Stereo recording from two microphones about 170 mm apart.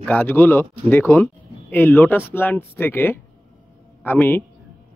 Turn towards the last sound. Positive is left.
turn(degrees=10)  # may be behind; listen again after turning